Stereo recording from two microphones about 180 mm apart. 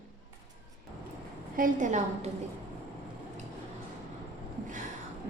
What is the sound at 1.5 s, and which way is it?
Speech, 45° right (ahead or behind).